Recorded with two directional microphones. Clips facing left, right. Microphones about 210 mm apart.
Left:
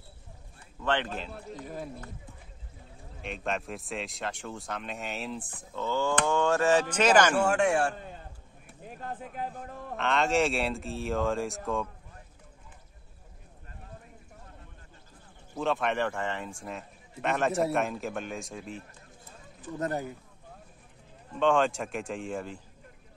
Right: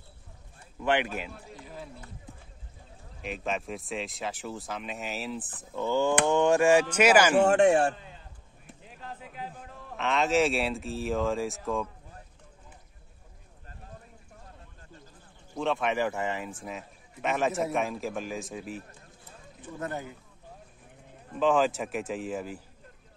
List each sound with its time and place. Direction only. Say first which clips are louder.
0.7 s speech: right 3 dB; 10° right (ahead or behind)
1.6 s a man's voice: left 5 dB; 50° left (ahead or behind)
3.3 s speech: right 1 dB; centre (ahead or behind)
5.8 s speech: right 3 dB; 15° right (ahead or behind)
7.3 s speech: right 4 dB; 20° right (ahead or behind)
7.9 s a sound: left 5 dB; 50° left (ahead or behind)
9.9 s speech: right 1 dB; centre (ahead or behind)
15.5 s speech: even; centre (ahead or behind)
19.8 s speech: left 4 dB; 40° left (ahead or behind)
21.4 s speech: right 1 dB; centre (ahead or behind)